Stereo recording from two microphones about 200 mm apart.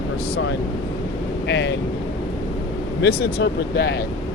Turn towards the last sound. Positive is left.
turn(degrees=55)  # may be behind; listen again after turning